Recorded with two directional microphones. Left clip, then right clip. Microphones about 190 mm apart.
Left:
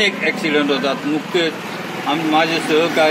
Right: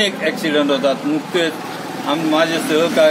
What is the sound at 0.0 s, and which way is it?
Speech, 15° right (ahead or behind).